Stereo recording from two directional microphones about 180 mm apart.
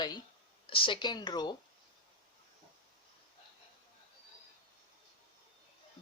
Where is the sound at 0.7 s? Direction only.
25° left (ahead or behind).